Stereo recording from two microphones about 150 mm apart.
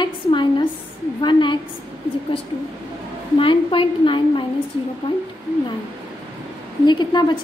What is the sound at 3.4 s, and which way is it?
A woman's voice, 35° left (ahead or behind).